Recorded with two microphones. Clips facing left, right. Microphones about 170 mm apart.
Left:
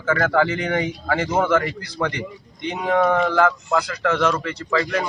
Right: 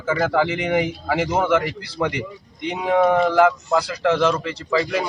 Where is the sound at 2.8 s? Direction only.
10° right (ahead or behind).